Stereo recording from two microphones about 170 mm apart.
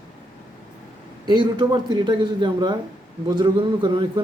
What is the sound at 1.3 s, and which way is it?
A man's voice, 25° right (ahead or behind).